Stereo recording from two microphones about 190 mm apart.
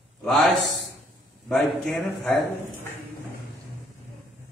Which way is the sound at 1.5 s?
5° left (ahead or behind).